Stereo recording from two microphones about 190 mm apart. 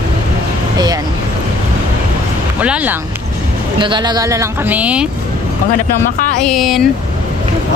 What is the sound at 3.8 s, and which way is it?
Speech, 25° right (ahead or behind).